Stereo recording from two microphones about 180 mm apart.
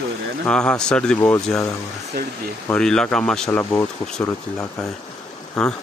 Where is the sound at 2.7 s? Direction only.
5° left (ahead or behind).